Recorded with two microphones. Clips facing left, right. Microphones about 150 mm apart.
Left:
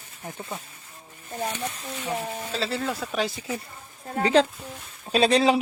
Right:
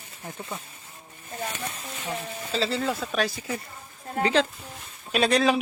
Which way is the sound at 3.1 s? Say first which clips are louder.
Even; 15° left (ahead or behind).